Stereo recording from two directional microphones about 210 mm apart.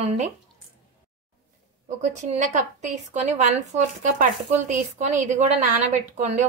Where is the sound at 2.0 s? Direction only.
35° right (ahead or behind).